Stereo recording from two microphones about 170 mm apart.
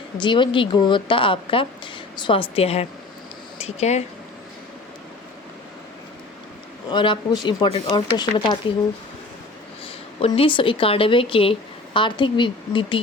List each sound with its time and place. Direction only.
0.2 s speech: 30° left (ahead or behind)
6.9 s speech: 25° left (ahead or behind)
9.8 s a woman's voice: 35° left (ahead or behind)